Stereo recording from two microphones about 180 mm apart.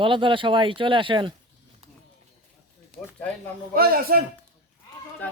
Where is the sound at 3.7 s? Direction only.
55° right (ahead or behind).